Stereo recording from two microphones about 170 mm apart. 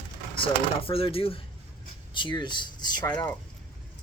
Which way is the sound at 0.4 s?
35° left (ahead or behind).